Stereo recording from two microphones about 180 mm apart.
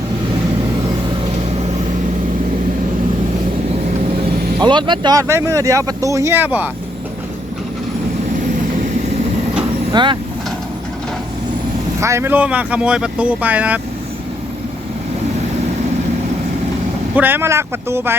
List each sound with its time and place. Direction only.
4.6 s speech: 25° right (ahead or behind); by 6.7 s 10° right (ahead or behind)
9.9 s speech: 25° right (ahead or behind)
11.9 s speech: 15° right (ahead or behind)
17.2 s speech: 10° right (ahead or behind)